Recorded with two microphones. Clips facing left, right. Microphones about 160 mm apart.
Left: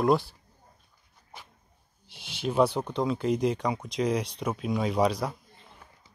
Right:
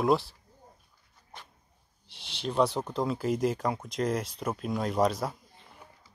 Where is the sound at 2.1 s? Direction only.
5° left (ahead or behind).